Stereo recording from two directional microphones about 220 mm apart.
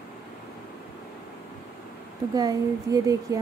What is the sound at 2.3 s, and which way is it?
Speech, 15° right (ahead or behind).